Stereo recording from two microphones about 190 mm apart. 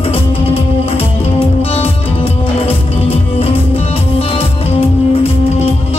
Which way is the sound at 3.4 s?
30° left (ahead or behind).